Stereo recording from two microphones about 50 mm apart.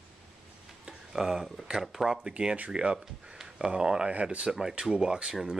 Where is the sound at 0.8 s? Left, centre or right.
Centre.